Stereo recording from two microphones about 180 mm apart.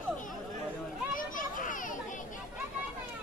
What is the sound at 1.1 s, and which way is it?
Children playing, 50° left (ahead or behind).